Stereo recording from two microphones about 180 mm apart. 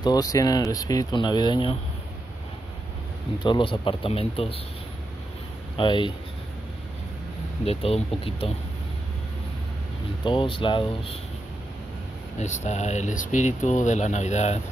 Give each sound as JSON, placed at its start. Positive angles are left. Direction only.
{"t": 0.0, "sound": "speech", "side_deg": 20}
{"t": 3.4, "sound": "speech", "side_deg": 25}
{"t": 5.8, "sound": "speech", "side_deg": 25}
{"t": 7.6, "sound": "speech", "side_deg": 35}
{"t": 10.2, "sound": "speech", "side_deg": 30}
{"t": 12.4, "sound": "speech", "side_deg": 40}